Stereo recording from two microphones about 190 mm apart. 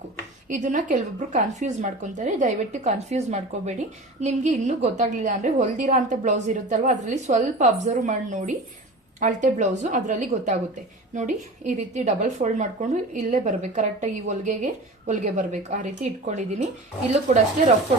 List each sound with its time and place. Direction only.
0.4 s a woman's voice: 40° right (ahead or behind)